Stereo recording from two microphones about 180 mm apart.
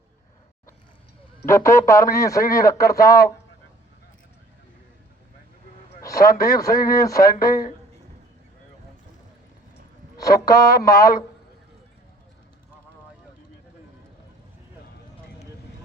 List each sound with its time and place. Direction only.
1.5 s speech: 15° left (ahead or behind)
6.0 s a sound: 20° left (ahead or behind)
6.8 s speech: 55° left (ahead or behind)
10.2 s speech: 20° left (ahead or behind)